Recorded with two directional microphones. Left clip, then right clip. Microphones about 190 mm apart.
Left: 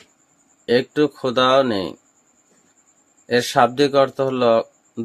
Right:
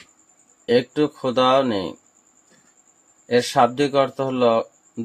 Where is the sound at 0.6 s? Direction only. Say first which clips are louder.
Left 1 dB; 20° left (ahead or behind).